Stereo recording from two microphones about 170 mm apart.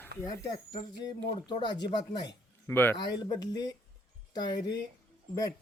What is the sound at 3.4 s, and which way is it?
Speech, 25° left (ahead or behind).